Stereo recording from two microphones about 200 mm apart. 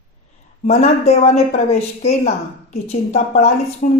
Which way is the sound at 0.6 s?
35° left (ahead or behind).